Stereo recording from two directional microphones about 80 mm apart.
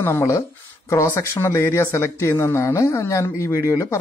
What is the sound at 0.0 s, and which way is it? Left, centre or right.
Speech, left.